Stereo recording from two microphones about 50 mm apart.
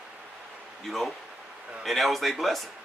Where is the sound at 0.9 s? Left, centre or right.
Centre.